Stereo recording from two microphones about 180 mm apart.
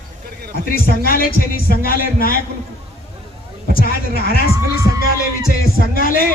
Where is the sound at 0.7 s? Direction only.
55° left (ahead or behind).